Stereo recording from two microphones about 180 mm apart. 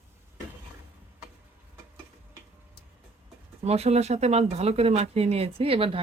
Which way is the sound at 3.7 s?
35° right (ahead or behind).